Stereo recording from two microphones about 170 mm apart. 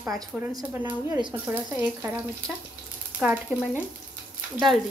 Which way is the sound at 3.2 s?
5° right (ahead or behind).